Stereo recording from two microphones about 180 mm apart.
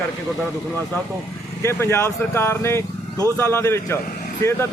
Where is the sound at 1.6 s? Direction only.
15° left (ahead or behind).